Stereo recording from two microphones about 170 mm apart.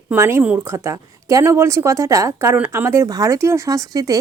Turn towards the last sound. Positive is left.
turn(degrees=-20)  # may be behind; listen again after turning